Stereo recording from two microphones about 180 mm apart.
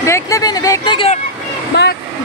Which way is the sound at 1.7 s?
65° left (ahead or behind).